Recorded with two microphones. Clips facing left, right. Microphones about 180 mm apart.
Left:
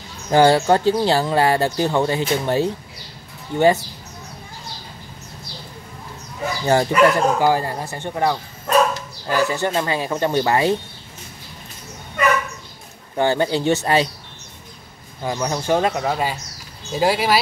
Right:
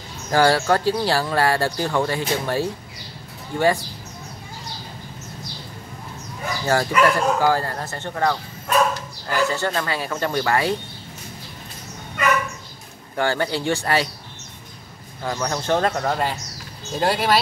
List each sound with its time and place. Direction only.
0.3 s speech: 20° left (ahead or behind)
6.6 s speech: 20° left (ahead or behind)
13.1 s speech: 20° left (ahead or behind)
15.2 s speech: 15° left (ahead or behind)